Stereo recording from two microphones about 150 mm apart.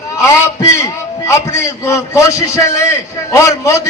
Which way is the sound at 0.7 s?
20° left (ahead or behind).